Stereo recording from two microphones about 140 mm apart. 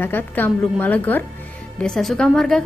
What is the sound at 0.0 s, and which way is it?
A woman's voice, 15° left (ahead or behind).